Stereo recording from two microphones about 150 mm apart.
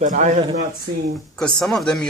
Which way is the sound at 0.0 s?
55° right (ahead or behind).